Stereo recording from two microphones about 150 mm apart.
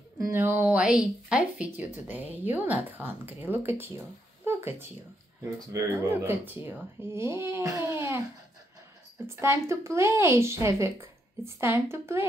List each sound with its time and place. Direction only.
0.2 s a woman's voice: 15° right (ahead or behind)
4.5 s a sound: 15° right (ahead or behind)
5.4 s a woman's voice: 20° right (ahead or behind)
9.2 s a woman's voice: 15° right (ahead or behind)